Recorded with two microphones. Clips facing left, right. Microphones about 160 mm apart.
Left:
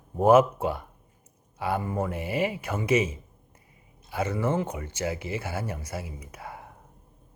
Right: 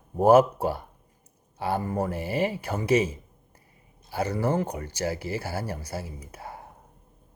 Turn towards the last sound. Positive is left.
turn(degrees=-30)  # may be behind; listen again after turning